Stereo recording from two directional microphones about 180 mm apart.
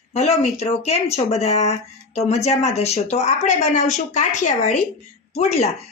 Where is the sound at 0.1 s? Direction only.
35° left (ahead or behind).